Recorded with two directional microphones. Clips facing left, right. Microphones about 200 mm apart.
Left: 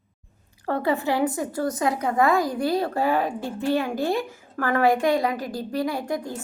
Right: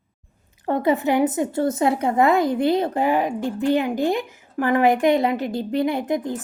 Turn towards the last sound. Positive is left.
turn(degrees=-20)  # may be behind; listen again after turning